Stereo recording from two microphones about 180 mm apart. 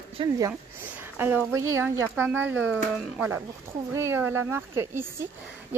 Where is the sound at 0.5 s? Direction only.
10° right (ahead or behind).